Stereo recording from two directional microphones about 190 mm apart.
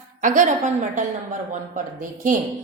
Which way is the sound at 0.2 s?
40° right (ahead or behind).